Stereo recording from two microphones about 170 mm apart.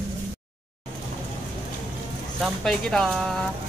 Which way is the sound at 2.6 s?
Centre (ahead or behind).